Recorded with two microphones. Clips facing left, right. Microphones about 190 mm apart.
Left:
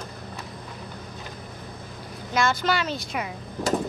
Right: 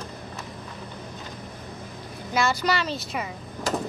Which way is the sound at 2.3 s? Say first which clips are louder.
Even; 5° right (ahead or behind).